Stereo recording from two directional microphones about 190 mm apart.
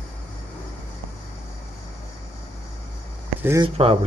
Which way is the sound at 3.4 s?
15° right (ahead or behind).